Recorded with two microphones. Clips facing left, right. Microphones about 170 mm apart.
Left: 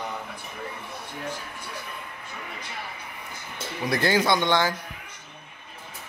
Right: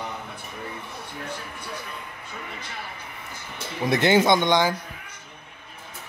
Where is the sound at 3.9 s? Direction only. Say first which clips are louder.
Right 4 dB; 20° right (ahead or behind).